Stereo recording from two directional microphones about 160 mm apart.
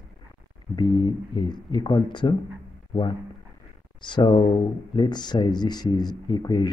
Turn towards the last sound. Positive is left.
turn(degrees=25)  # may be behind; listen again after turning